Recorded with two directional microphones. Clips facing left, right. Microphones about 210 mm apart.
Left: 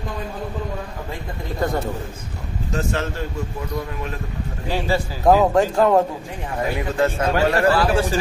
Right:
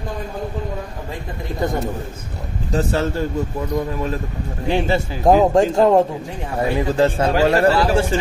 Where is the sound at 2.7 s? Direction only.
35° right (ahead or behind).